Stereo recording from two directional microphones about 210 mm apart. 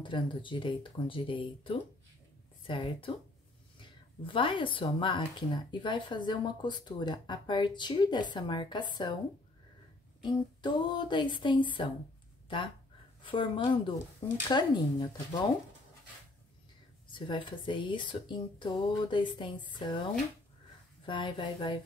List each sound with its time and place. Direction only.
0.0 s speech: 25° left (ahead or behind)
4.2 s speech: 25° left (ahead or behind)
10.2 s speech: 20° left (ahead or behind)
13.2 s speech: 25° left (ahead or behind)
17.1 s speech: 20° left (ahead or behind)
21.0 s speech: 25° left (ahead or behind)